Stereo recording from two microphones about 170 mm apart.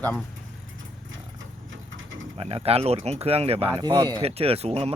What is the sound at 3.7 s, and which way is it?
Speech, 25° right (ahead or behind).